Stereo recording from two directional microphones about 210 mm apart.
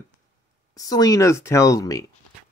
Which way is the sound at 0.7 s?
15° left (ahead or behind).